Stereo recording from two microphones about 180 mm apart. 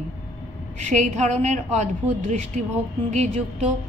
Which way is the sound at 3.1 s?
40° right (ahead or behind).